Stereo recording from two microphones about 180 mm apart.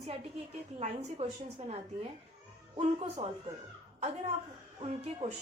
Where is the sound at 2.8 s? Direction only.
40° right (ahead or behind).